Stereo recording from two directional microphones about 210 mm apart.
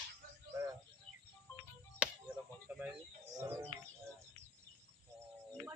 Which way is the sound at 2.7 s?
5° right (ahead or behind).